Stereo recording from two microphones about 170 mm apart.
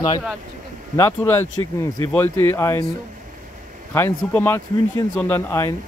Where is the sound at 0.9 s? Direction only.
15° left (ahead or behind).